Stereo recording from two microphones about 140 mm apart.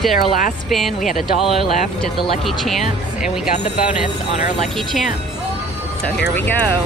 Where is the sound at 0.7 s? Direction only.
Centre (ahead or behind).